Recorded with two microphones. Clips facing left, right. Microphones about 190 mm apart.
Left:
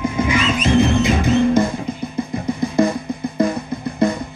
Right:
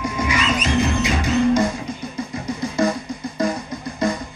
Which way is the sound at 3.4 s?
55° left (ahead or behind).